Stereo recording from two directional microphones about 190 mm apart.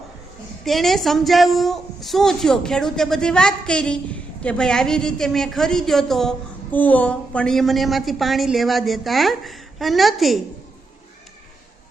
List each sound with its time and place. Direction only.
0.6 s a woman's voice: centre (ahead or behind)